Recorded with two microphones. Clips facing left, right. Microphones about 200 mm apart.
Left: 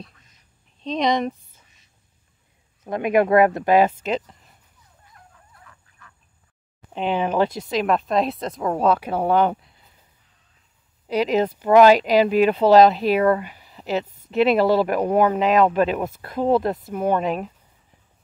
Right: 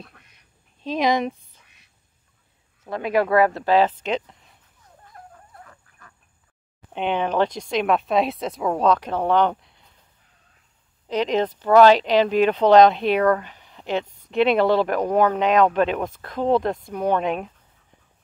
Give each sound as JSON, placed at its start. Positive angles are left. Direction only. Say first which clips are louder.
{"t": 0.0, "sound": "duck", "louder": "left 2 dB", "side_deg": -65}
{"t": 0.8, "sound": "speech", "louder": "even", "side_deg": -5}
{"t": 2.8, "sound": "speech", "louder": "left 3 dB", "side_deg": 20}
{"t": 5.1, "sound": "dog", "louder": "right 8 dB", "side_deg": -45}
{"t": 6.9, "sound": "speech", "louder": "left 1 dB", "side_deg": 0}
{"t": 11.1, "sound": "speech", "louder": "left 2 dB", "side_deg": 10}